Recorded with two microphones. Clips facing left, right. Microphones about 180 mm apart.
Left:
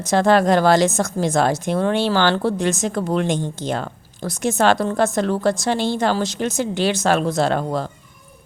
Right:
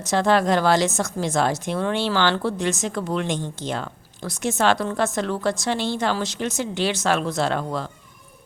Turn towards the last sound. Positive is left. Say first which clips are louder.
# left 4 dB
turn(degrees=40)  # may be behind; listen again after turning